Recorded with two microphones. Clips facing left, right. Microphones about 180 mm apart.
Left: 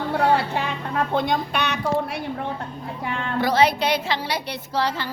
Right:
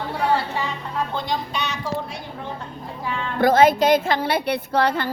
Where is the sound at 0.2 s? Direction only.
60° left (ahead or behind).